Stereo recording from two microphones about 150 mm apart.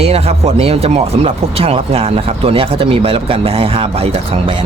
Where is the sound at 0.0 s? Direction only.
45° right (ahead or behind).